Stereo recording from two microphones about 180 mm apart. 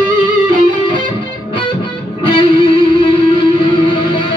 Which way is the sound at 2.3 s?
30° left (ahead or behind).